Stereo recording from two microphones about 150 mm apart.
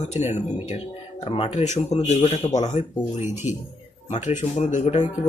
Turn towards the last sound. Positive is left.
turn(degrees=50)  # may be behind; listen again after turning